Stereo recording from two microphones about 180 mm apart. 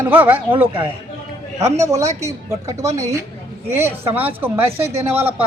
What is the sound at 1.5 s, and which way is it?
Speech, 15° right (ahead or behind).